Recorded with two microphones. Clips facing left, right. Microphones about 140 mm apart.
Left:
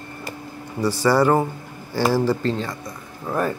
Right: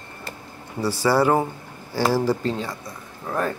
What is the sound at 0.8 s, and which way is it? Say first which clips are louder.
Speech: left 2 dB; 10° right (ahead or behind).